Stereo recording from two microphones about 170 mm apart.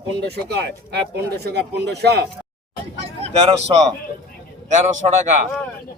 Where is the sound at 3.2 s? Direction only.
35° right (ahead or behind).